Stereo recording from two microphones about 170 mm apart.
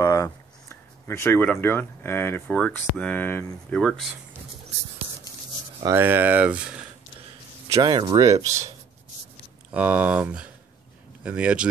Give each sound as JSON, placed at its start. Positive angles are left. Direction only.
{"t": 0.0, "sound": "a sound", "side_deg": 20}
{"t": 1.5, "sound": "speech", "side_deg": 15}
{"t": 5.9, "sound": "speech", "side_deg": -10}
{"t": 7.6, "sound": "speech", "side_deg": -25}
{"t": 9.7, "sound": "speech", "side_deg": -10}